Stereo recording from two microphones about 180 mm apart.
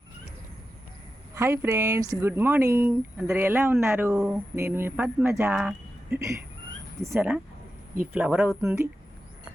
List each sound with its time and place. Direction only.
1.4 s speech: 15° right (ahead or behind)